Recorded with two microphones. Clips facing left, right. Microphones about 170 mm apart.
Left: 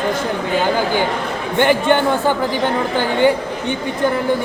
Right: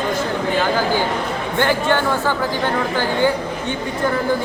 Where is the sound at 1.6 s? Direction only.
20° left (ahead or behind).